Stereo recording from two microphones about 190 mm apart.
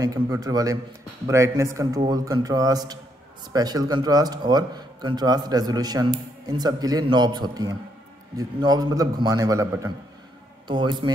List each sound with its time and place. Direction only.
0.0 s a man's voice: 20° right (ahead or behind)